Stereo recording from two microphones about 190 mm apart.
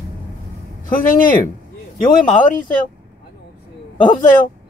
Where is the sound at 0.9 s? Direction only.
45° left (ahead or behind).